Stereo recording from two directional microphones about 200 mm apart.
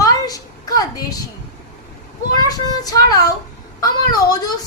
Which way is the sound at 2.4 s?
20° left (ahead or behind).